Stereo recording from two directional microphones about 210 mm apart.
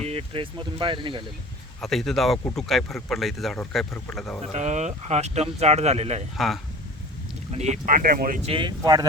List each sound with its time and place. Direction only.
0.0 s speech: 30° right (ahead or behind)
1.8 s speech: centre (ahead or behind)
4.5 s speech: 35° right (ahead or behind)
6.3 s speech: centre (ahead or behind)
7.5 s speech: 35° right (ahead or behind)
8.4 s speech: 25° right (ahead or behind)